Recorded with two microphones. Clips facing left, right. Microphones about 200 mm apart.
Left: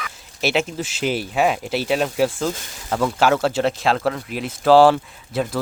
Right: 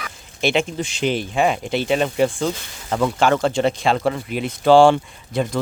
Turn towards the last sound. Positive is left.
turn(degrees=5)  # may be behind; listen again after turning